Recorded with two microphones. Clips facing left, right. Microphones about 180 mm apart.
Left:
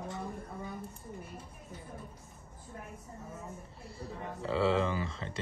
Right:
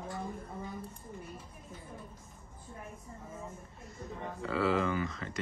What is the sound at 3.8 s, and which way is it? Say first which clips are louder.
Speech: even; 30° left (ahead or behind).